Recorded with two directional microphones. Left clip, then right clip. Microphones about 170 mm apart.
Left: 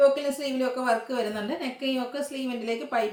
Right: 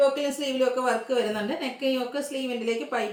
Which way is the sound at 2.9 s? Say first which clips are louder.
Left 4 dB; 10° right (ahead or behind).